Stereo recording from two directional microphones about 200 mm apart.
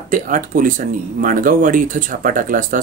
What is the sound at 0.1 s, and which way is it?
Speech, 40° right (ahead or behind).